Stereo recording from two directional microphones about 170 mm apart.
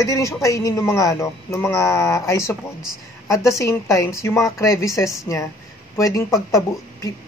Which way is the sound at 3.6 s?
15° left (ahead or behind).